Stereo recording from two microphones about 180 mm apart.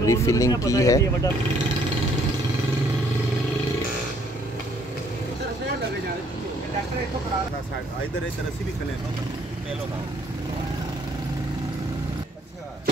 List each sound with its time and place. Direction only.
0.0 s speech: 15° left (ahead or behind)